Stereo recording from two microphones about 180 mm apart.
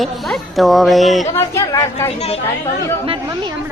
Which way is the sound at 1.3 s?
15° left (ahead or behind).